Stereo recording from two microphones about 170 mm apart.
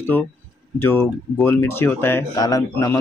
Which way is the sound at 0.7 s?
15° left (ahead or behind).